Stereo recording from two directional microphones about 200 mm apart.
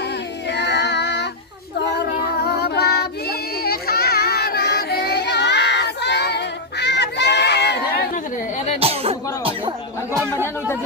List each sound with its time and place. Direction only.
0.4 s child singing: 60° left (ahead or behind)
8.8 s music: 30° right (ahead or behind)
10.3 s chatter: 10° left (ahead or behind)